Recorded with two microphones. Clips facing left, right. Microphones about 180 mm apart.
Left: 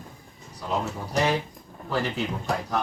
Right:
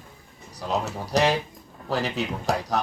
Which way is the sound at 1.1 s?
80° right.